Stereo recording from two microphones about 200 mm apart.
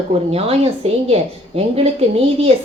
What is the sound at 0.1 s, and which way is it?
A woman's voice, 30° right (ahead or behind).